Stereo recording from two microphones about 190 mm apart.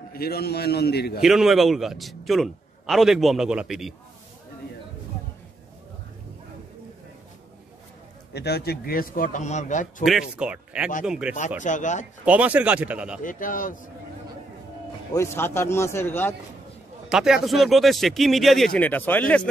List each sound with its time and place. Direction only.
0.1 s a man's voice: 55° left (ahead or behind)
1.2 s a man's voice: centre (ahead or behind)
8.3 s a man's voice: 60° left (ahead or behind); by 10.0 s 40° left (ahead or behind)
10.3 s a man's voice: 5° right (ahead or behind)
11.6 s speech: 40° left (ahead or behind)
12.3 s speech: 10° right (ahead or behind)
13.2 s a man's voice: 45° left (ahead or behind)
15.1 s a man's voice: 10° left (ahead or behind)
17.1 s a man's voice: 5° right (ahead or behind)